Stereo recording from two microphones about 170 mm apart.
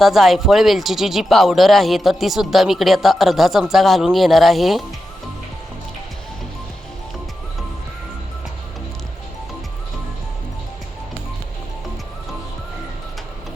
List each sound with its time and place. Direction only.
0.0 s speech: centre (ahead or behind)